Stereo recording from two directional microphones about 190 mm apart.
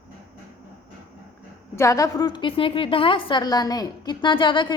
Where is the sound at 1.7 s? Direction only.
15° left (ahead or behind).